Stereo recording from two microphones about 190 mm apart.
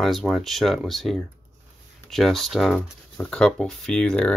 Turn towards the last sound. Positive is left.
turn(degrees=5)  # may be behind; listen again after turning